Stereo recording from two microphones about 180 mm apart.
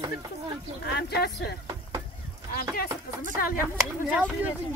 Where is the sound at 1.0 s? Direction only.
65° left (ahead or behind).